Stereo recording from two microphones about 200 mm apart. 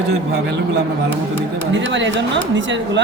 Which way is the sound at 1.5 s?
60° right (ahead or behind).